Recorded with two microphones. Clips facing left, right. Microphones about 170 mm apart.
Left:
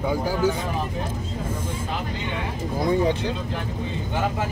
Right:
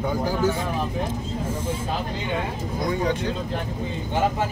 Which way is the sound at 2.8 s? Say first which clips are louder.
Left 3 dB; 30° left (ahead or behind).